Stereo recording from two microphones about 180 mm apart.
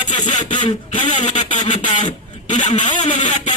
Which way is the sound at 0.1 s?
25° left (ahead or behind).